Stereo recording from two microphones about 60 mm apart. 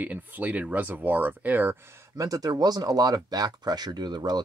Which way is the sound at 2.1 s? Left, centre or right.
Right.